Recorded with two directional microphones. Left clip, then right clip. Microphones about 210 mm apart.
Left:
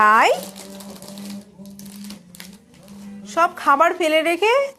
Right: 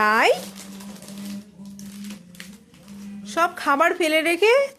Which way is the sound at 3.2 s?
15° right (ahead or behind).